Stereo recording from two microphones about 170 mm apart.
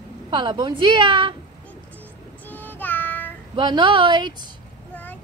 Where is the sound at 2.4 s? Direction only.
10° left (ahead or behind).